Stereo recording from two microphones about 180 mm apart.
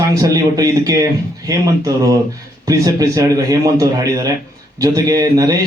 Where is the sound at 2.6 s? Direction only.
20° right (ahead or behind).